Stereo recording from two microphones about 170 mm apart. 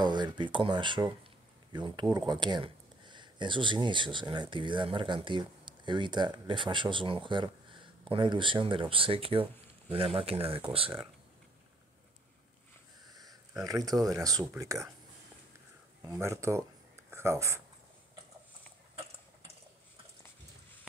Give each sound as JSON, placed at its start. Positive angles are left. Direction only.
{"t": 0.0, "sound": "speech", "side_deg": -25}
{"t": 13.1, "sound": "a sound", "side_deg": -20}
{"t": 13.6, "sound": "speech", "side_deg": -20}
{"t": 16.2, "sound": "speech", "side_deg": -15}